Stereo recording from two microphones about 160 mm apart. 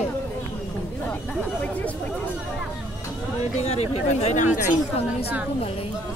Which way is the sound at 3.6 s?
40° left (ahead or behind).